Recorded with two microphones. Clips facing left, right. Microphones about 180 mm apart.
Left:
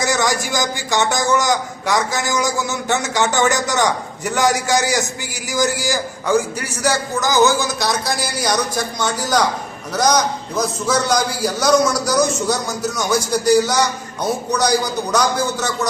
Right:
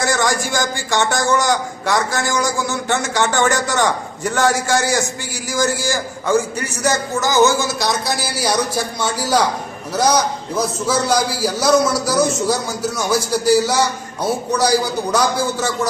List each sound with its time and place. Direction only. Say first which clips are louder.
0.0 s a man's voice: even; 15° left (ahead or behind)
7.8 s a man's voice: even; centre (ahead or behind)